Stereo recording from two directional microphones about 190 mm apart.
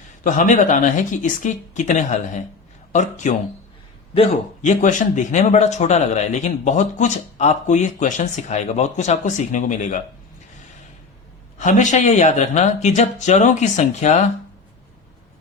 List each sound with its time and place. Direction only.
0.3 s speech: 40° left (ahead or behind)
11.5 s speech: 40° left (ahead or behind)